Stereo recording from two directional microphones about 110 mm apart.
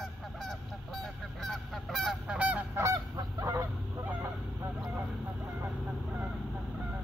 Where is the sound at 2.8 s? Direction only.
30° right (ahead or behind).